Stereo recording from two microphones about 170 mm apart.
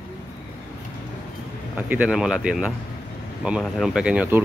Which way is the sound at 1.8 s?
10° right (ahead or behind).